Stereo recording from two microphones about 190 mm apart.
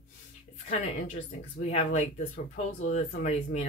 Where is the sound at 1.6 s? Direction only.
35° left (ahead or behind).